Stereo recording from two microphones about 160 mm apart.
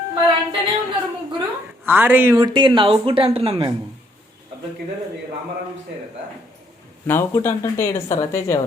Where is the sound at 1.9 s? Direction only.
10° right (ahead or behind); by 3.6 s 35° right (ahead or behind).